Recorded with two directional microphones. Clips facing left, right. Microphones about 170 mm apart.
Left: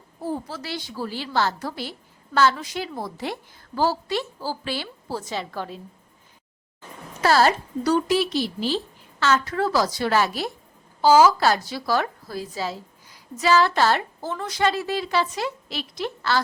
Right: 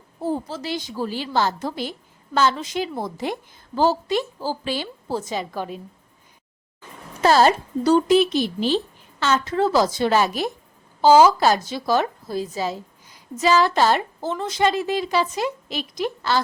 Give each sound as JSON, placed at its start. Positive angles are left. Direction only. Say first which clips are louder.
{"t": 0.5, "sound": "a woman's voice", "louder": "right 4 dB", "side_deg": -15}
{"t": 7.2, "sound": "a woman's voice", "louder": "right 3 dB", "side_deg": -20}